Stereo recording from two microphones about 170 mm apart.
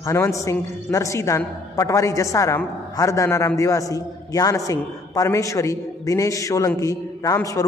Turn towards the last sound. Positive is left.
turn(degrees=20)  # may be behind; listen again after turning